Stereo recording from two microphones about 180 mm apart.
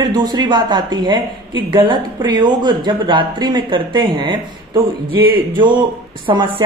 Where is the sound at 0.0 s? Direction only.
25° right (ahead or behind).